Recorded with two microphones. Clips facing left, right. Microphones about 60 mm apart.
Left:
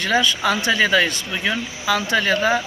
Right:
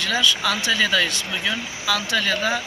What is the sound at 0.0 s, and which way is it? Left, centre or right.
Speech, left.